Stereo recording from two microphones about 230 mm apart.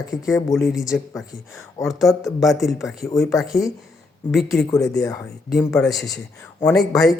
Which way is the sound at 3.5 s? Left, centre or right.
Centre.